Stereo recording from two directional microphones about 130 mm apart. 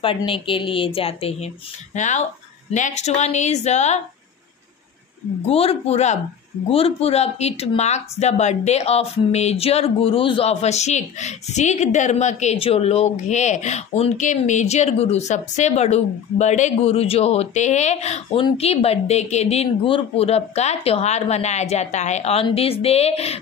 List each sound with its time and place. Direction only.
0.0 s speech: 45° left (ahead or behind)
2.0 s speech: 70° left (ahead or behind)
5.5 s speech: 50° left (ahead or behind)